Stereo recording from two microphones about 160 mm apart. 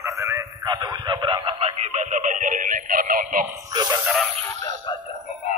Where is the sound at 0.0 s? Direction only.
20° right (ahead or behind); by 3.4 s 60° right (ahead or behind).